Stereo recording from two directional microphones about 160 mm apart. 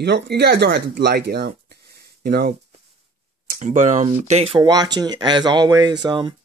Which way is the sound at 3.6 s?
50° right (ahead or behind).